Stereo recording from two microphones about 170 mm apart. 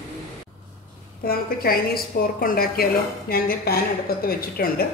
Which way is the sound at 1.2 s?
60° left (ahead or behind).